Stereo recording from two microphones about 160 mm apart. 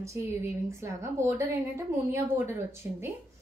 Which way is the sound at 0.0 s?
20° right (ahead or behind).